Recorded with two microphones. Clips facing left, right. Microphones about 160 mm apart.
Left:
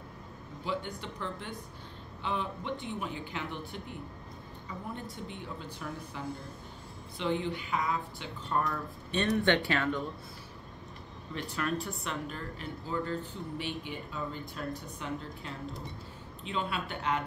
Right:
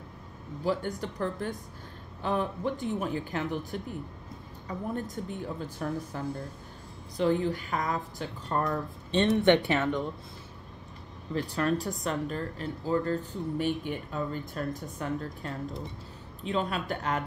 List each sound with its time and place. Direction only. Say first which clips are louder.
0.7 s speech: right 6 dB; 40° right (ahead or behind)
4.9 s speech: right 7 dB; 45° right (ahead or behind)
9.1 s speech: right 5 dB; 25° right (ahead or behind)
11.3 s a woman's voice: right 6 dB; 35° right (ahead or behind)